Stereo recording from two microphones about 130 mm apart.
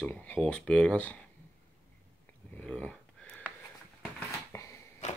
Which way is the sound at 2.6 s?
10° left (ahead or behind).